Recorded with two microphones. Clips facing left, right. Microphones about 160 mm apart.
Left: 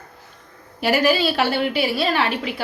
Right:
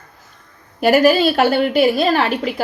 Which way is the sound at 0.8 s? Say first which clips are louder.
Right 6 dB; 50° right (ahead or behind).